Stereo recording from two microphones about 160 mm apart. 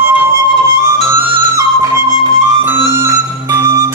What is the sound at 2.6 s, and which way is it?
Music, 15° right (ahead or behind).